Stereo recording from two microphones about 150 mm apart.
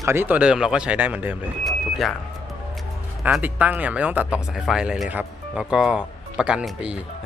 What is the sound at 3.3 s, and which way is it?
Speech, 10° right (ahead or behind).